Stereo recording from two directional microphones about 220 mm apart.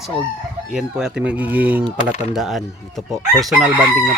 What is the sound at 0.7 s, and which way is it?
Speech, 5° right (ahead or behind).